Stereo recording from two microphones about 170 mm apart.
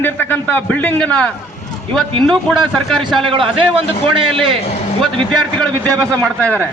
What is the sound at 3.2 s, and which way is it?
Speech, 30° right (ahead or behind).